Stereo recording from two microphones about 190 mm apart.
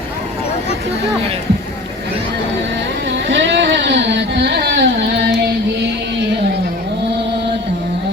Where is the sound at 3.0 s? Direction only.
70° right (ahead or behind).